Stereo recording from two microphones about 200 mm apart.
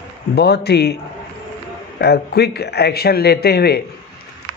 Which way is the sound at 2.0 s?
55° left (ahead or behind).